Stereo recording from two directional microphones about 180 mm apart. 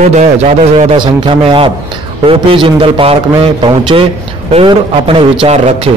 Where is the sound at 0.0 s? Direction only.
40° right (ahead or behind).